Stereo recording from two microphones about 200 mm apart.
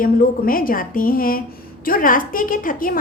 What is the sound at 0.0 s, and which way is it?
A woman's voice, 45° left (ahead or behind).